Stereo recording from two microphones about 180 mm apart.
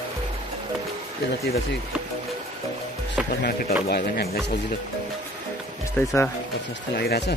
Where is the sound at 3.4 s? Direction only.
60° left (ahead or behind).